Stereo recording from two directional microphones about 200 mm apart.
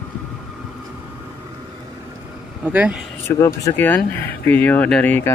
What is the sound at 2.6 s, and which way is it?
Speech, 5° right (ahead or behind).